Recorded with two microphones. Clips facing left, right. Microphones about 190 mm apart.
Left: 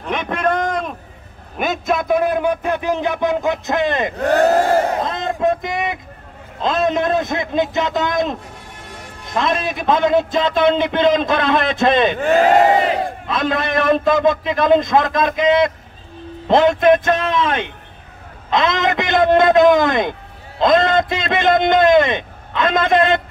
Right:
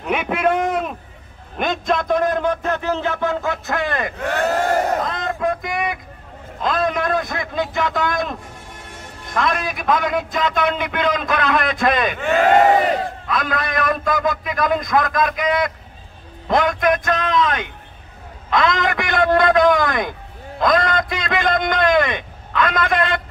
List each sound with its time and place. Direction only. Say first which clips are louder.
0.0 s a man's voice: right 1 dB; 10° right (ahead or behind)
1.6 s a man's voice: left 1 dB; 5° left (ahead or behind); by 4.1 s 20° left (ahead or behind)
4.2 s speech: left 8 dB; 35° left (ahead or behind)
5.0 s a man's voice: left 3 dB; 25° left (ahead or behind)
12.2 s speech: left 4 dB; 35° left (ahead or behind)
13.3 s a man's voice: left 4 dB; 25° left (ahead or behind)